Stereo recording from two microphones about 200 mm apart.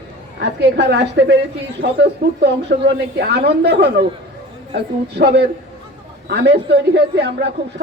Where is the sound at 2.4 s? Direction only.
55° right (ahead or behind).